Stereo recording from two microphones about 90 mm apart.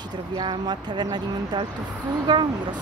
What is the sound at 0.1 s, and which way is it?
Speech, 55° right (ahead or behind).